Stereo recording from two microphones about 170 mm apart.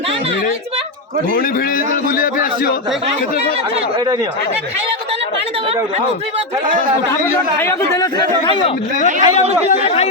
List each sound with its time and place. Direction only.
2.1 s a man's voice: 55° left (ahead or behind)
9.2 s speech: 40° left (ahead or behind)